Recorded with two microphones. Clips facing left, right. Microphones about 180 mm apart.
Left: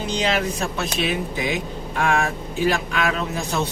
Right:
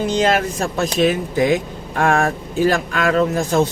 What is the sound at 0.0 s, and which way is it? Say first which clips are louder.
Speech: right 5 dB; 50° right (ahead or behind).